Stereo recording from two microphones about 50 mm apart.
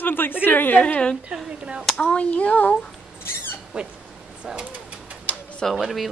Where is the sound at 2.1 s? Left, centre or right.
Left.